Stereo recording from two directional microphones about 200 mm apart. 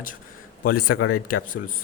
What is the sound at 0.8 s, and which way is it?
Speech, 90° left.